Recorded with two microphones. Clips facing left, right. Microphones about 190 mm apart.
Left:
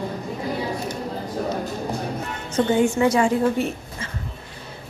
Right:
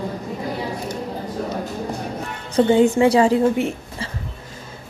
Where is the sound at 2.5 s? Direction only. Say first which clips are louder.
Right 4 dB; 30° right (ahead or behind).